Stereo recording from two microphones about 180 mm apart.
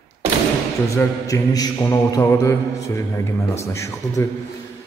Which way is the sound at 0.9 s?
20° left (ahead or behind).